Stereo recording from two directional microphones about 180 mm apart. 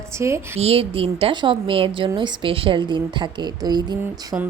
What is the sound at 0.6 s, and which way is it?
A woman's voice, 30° right (ahead or behind).